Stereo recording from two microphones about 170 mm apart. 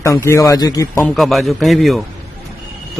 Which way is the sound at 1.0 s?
Centre (ahead or behind).